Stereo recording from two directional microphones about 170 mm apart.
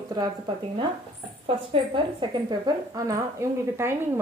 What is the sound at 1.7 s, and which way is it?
A woman's voice, 25° right (ahead or behind).